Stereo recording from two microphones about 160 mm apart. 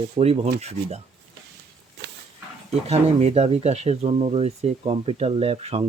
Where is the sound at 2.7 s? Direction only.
40° right (ahead or behind).